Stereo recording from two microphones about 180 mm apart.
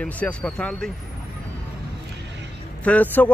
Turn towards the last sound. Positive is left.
turn(degrees=10)  # may be behind; listen again after turning